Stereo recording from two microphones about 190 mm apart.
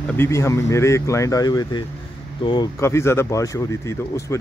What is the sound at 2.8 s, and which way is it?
Speech, 15° left (ahead or behind).